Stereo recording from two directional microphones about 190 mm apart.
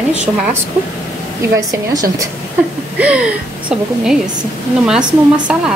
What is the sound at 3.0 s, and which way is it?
A woman's voice, 5° right (ahead or behind).